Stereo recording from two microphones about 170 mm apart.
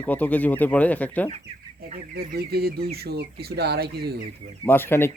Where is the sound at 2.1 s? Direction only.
65° right (ahead or behind).